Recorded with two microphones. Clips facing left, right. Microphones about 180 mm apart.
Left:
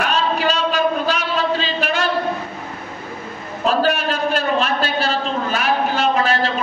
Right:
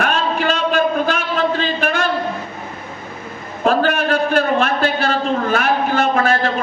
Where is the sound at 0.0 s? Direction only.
50° right (ahead or behind).